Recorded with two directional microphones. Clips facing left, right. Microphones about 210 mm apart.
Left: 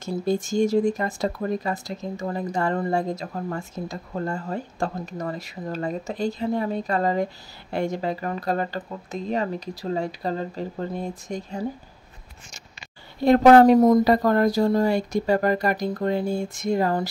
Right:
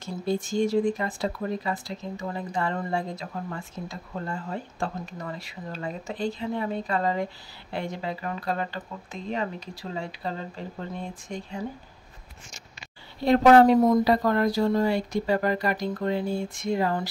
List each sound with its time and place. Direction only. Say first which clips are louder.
0.0 s speech: left 4 dB; 45° left (ahead or behind)
13.2 s speech: left 3 dB; 45° left (ahead or behind)